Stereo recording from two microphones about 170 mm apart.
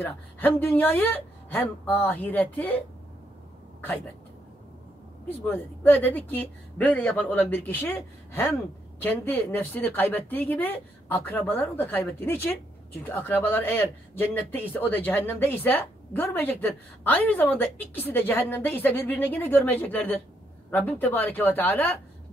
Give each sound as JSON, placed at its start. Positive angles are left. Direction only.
{"t": 0.0, "sound": "a man's voice", "side_deg": 10}
{"t": 5.5, "sound": "a man's voice", "side_deg": 10}